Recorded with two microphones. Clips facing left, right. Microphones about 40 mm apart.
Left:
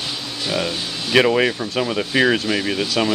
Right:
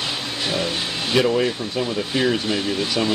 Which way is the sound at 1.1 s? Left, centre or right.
Left.